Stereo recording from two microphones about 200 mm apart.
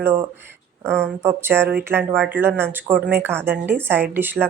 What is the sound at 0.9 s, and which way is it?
Speech, 5° left (ahead or behind).